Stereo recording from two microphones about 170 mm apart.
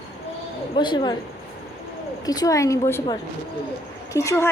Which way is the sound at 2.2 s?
20° left (ahead or behind).